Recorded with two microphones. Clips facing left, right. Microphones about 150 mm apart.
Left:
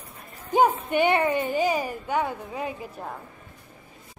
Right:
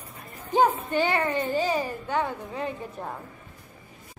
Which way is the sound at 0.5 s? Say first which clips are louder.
Left 1 dB; 15° left (ahead or behind).